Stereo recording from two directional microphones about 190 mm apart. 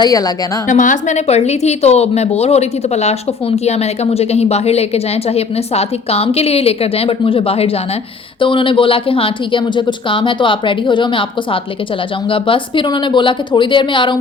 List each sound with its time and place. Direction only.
0.0 s speech: 20° left (ahead or behind)
0.7 s a woman's voice: 40° left (ahead or behind); by 14.2 s 25° left (ahead or behind)